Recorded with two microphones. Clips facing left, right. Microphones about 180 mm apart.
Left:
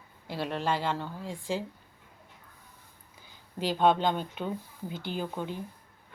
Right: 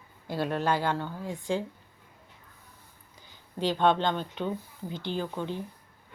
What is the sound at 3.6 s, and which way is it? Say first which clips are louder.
Speech: even; 5° left (ahead or behind).